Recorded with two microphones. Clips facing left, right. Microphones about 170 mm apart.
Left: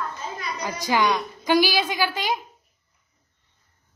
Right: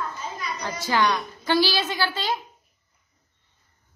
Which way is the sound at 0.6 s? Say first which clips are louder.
Left 1 dB; 15° left (ahead or behind).